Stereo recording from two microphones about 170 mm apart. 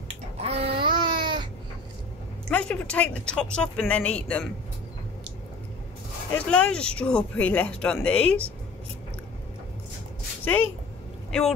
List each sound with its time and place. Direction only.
0.4 s a sound: 35° right (ahead or behind)
2.5 s speech: 5° left (ahead or behind)
6.3 s speech: 5° left (ahead or behind)
10.4 s speech: 10° left (ahead or behind)